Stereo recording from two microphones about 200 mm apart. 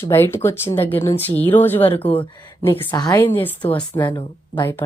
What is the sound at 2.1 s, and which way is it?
A woman's voice, 25° left (ahead or behind).